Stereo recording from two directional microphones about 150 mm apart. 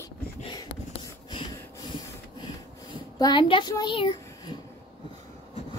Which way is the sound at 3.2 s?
30° left (ahead or behind).